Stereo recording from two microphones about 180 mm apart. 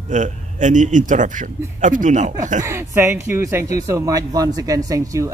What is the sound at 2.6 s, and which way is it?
Speech, 15° right (ahead or behind).